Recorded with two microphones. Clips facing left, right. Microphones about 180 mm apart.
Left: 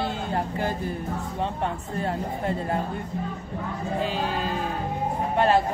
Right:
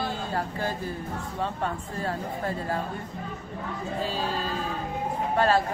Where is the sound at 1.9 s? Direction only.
20° left (ahead or behind).